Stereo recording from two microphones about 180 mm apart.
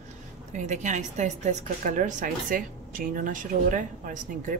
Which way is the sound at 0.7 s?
40° right (ahead or behind).